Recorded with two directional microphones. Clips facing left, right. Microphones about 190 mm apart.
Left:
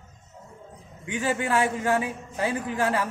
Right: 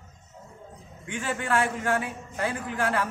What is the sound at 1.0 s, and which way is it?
A man's voice, 10° left (ahead or behind).